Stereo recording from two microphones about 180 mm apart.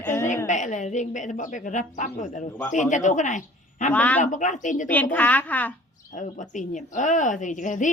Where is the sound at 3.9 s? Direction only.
10° left (ahead or behind).